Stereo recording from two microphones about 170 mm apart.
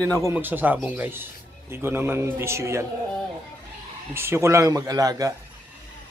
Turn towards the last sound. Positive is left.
turn(degrees=-20)  # may be behind; listen again after turning